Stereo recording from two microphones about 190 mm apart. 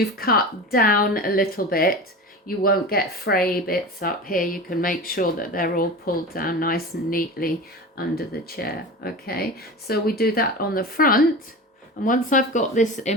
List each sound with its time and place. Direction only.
0.0 s speech: 50° left (ahead or behind)